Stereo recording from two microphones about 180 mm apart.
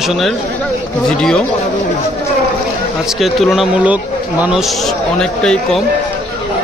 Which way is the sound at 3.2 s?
Centre (ahead or behind).